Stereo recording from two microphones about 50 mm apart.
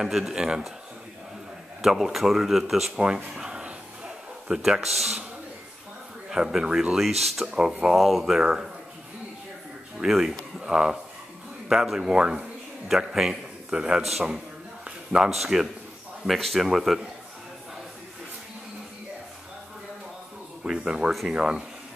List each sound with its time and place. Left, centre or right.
0.0 s a man's voice: centre
1.8 s speech: centre
3.0 s speech: right
3.3 s a sound: centre
4.8 s a man's voice: centre
6.3 s a man's voice: centre
7.9 s speech: centre
8.2 s a man's voice: centre
10.0 s a man's voice: centre
15.2 s a man's voice: centre
20.6 s a man's voice: centre